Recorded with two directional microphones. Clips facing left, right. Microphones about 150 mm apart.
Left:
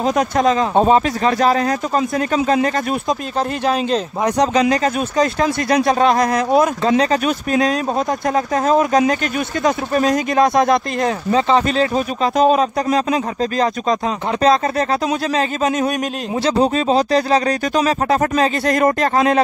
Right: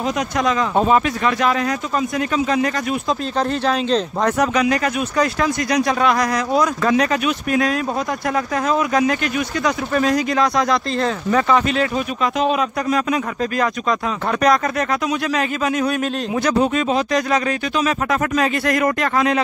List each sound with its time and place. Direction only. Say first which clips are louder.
0.4 s speech: left 2 dB; 30° left (ahead or behind)
3.3 s speech: left 1 dB; 10° left (ahead or behind)
4.6 s speech: left 2 dB; 25° left (ahead or behind)